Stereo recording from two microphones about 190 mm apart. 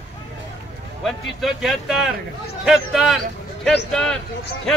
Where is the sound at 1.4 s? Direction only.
Centre (ahead or behind).